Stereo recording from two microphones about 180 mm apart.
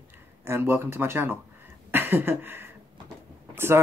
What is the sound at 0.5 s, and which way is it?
Speech, 10° right (ahead or behind).